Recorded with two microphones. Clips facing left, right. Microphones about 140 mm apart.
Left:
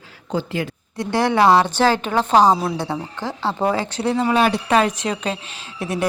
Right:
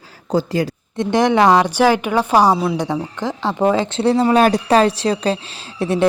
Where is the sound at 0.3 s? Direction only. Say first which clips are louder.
Right 5 dB; 40° right (ahead or behind).